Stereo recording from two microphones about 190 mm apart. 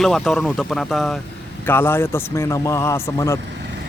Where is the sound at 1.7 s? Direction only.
10° left (ahead or behind).